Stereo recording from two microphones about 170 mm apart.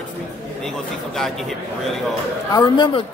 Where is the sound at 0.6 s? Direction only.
Centre (ahead or behind).